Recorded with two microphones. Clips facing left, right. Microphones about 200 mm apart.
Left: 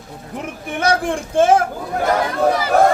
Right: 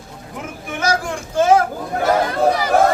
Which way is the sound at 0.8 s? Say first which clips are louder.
Left 3 dB; 30° left (ahead or behind).